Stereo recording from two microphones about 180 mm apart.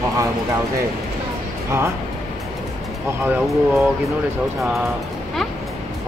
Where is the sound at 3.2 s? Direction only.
10° right (ahead or behind).